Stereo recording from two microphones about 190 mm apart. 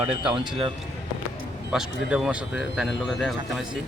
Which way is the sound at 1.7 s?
5° right (ahead or behind).